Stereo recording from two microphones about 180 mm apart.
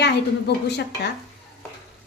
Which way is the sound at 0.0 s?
70° left (ahead or behind).